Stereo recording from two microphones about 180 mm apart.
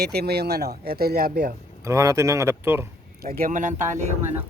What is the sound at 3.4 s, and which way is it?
Speech, 45° right (ahead or behind).